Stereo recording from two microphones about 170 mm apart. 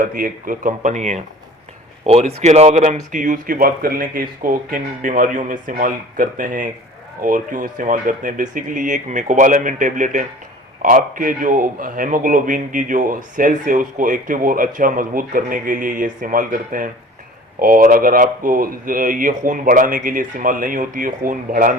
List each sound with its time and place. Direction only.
0.0 s a man's voice: 55° right (ahead or behind)